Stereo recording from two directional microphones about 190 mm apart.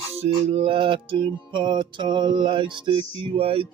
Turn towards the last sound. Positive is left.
turn(degrees=-30)  # may be behind; listen again after turning